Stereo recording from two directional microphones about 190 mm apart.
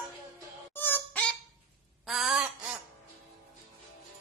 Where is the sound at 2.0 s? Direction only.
Centre (ahead or behind).